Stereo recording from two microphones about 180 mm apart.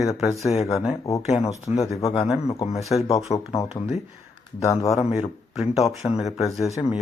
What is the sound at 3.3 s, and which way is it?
Speech, 35° left (ahead or behind).